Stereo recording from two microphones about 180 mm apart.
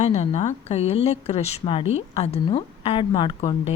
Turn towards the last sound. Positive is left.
turn(degrees=35)  # may be behind; listen again after turning